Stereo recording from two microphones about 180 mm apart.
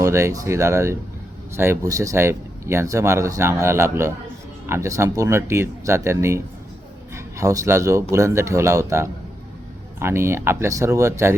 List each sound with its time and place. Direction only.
0.0 s a man's voice: 15° right (ahead or behind)